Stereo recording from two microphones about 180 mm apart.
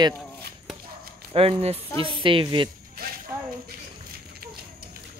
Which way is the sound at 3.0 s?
55° right (ahead or behind).